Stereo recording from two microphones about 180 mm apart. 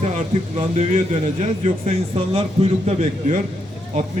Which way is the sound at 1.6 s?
35° right (ahead or behind).